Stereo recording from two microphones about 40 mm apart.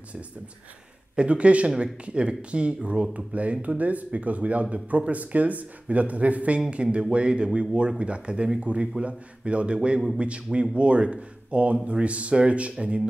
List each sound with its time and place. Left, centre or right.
1.1 s speech: right